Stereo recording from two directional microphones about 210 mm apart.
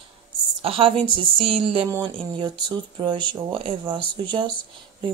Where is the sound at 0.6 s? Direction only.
25° right (ahead or behind).